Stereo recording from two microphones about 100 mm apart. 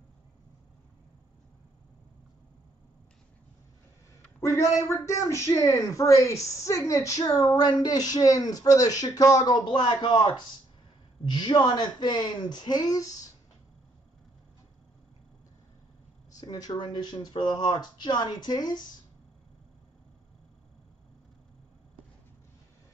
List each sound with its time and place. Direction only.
4.4 s a woman's voice: 30° left (ahead or behind)
9.7 s speech: 55° left (ahead or behind)
16.3 s speech: 40° left (ahead or behind)